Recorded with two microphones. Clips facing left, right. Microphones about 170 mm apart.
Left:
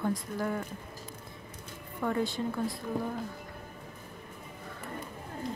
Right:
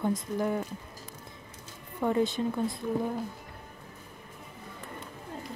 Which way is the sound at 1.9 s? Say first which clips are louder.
Right 4 dB; 20° right (ahead or behind).